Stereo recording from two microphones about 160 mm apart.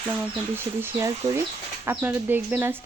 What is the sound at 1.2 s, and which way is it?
Speech, 20° right (ahead or behind).